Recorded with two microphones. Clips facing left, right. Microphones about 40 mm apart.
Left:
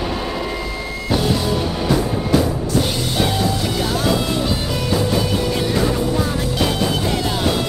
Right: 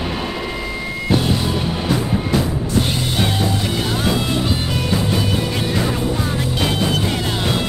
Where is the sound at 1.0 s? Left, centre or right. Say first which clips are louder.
Even; centre.